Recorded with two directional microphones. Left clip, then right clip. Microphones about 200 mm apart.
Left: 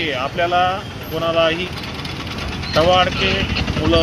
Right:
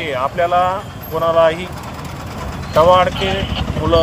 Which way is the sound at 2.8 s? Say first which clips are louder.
Right 4 dB; 10° right (ahead or behind).